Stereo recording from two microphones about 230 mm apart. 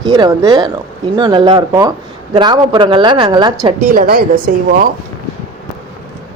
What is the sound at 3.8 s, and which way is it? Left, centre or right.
Speech, right.